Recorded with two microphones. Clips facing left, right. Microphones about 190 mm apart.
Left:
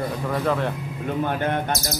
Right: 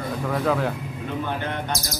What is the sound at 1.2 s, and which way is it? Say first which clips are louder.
Speech: left 6 dB; 50° left (ahead or behind).